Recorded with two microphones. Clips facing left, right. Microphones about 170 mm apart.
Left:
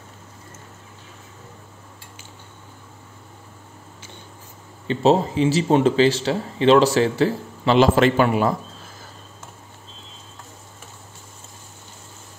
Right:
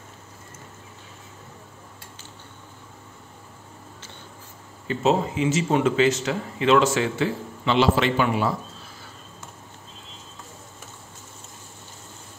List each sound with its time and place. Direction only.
4.8 s speech: 30° left (ahead or behind)